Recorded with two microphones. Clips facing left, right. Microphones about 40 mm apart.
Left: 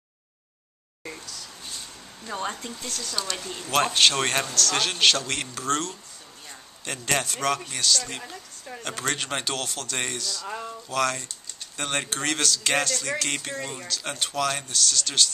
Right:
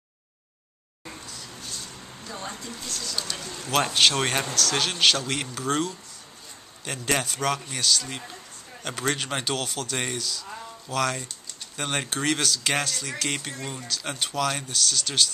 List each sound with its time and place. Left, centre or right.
2.2 s speech: left
3.2 s speech: centre